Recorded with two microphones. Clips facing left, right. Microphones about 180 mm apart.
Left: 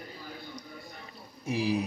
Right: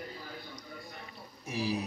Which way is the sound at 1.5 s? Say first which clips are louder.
Left 5 dB; 15° left (ahead or behind).